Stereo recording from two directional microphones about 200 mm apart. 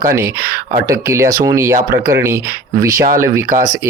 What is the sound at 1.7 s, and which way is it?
Speech, 45° right (ahead or behind).